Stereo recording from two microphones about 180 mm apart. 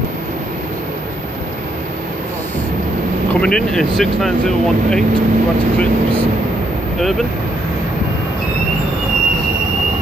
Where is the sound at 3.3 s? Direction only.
5° left (ahead or behind).